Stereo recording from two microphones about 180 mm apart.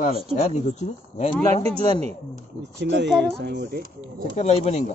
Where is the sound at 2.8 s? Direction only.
75° right (ahead or behind).